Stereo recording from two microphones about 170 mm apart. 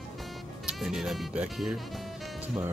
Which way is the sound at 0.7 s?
Centre (ahead or behind).